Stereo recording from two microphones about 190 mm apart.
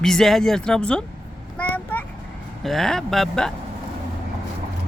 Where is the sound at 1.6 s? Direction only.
10° left (ahead or behind).